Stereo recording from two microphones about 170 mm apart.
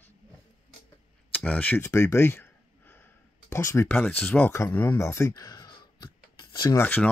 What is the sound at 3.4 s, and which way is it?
Speech, 15° left (ahead or behind).